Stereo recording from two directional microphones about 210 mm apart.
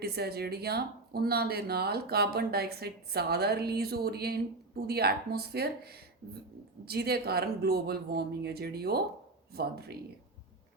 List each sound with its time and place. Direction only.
0.0 s speech: 50° right (ahead or behind)